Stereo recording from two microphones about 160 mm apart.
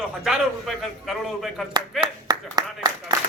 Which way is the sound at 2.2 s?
25° right (ahead or behind).